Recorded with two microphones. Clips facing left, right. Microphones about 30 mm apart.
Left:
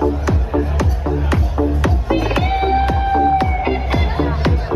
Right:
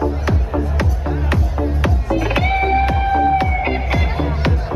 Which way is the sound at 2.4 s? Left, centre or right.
Centre.